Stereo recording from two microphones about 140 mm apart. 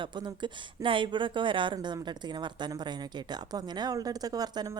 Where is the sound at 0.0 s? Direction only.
30° right (ahead or behind).